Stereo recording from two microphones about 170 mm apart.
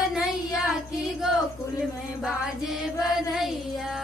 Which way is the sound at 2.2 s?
Centre (ahead or behind).